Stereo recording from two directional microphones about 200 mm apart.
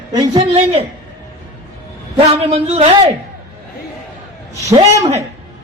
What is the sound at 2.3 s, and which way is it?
Speech, 30° right (ahead or behind).